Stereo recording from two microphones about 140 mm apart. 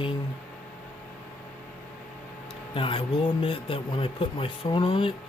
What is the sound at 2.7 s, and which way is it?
Speech, 40° left (ahead or behind).